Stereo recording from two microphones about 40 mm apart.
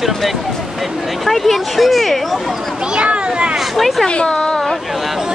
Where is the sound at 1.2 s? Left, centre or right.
Centre.